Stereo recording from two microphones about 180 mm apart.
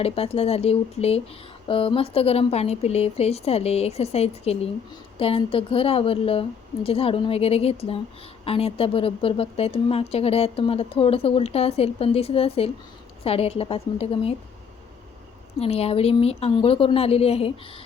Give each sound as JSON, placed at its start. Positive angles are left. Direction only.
{"t": 0.0, "sound": "a woman's voice", "side_deg": 35}
{"t": 15.6, "sound": "a woman's voice", "side_deg": 35}